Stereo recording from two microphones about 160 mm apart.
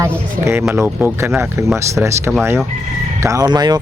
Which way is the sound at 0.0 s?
20° right (ahead or behind).